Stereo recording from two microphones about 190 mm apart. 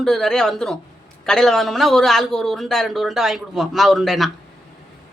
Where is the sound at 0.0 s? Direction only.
Centre (ahead or behind).